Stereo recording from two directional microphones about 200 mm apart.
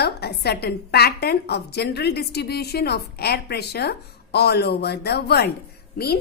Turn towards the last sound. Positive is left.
turn(degrees=50)  # may be behind; listen again after turning